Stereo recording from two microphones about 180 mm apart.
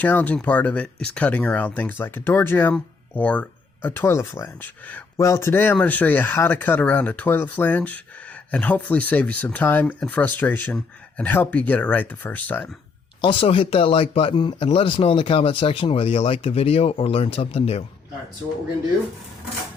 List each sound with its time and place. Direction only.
0.0 s speech: 10° left (ahead or behind)
13.2 s speech: 30° left (ahead or behind)